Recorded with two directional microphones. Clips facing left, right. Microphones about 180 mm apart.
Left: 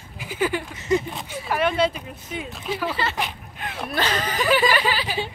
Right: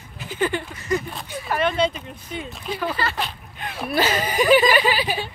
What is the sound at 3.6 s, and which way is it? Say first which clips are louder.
Speech: right 4 dB; centre (ahead or behind).